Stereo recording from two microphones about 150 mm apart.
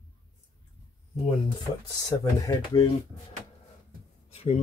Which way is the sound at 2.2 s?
20° left (ahead or behind).